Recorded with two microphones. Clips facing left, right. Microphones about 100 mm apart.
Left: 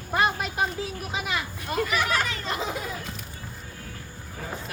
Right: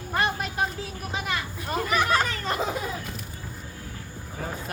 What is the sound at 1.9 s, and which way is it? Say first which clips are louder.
Speech: right 6 dB; 35° right (ahead or behind).